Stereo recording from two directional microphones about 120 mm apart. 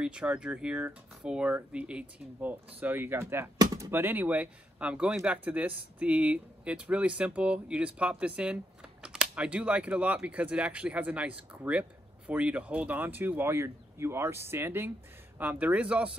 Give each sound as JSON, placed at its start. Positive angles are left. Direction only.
{"t": 0.0, "sound": "speech", "side_deg": -5}